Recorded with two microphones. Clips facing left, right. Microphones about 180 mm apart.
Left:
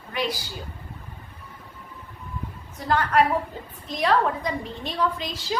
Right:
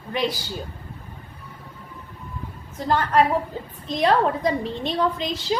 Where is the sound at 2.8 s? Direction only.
30° right (ahead or behind).